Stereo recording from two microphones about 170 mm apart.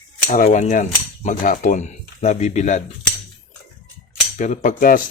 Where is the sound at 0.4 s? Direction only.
45° left (ahead or behind).